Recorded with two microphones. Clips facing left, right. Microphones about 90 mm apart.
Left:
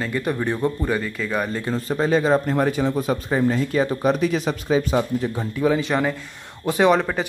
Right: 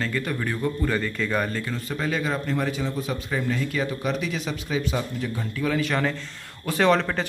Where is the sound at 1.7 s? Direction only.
35° left (ahead or behind).